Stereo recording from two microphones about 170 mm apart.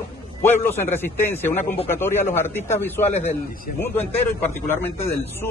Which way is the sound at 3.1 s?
40° left (ahead or behind).